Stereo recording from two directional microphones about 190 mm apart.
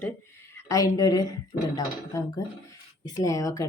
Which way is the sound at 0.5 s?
15° left (ahead or behind).